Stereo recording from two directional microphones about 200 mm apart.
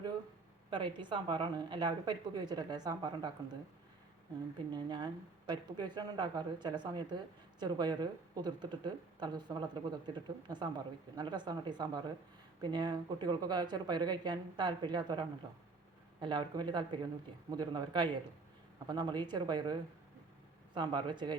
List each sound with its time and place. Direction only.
0.7 s speech: 25° right (ahead or behind)
4.7 s speech: 20° right (ahead or behind)